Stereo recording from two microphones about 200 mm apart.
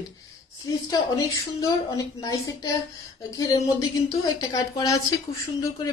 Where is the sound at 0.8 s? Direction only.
15° left (ahead or behind).